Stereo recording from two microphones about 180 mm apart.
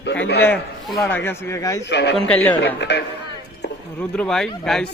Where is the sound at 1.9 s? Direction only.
70° left (ahead or behind).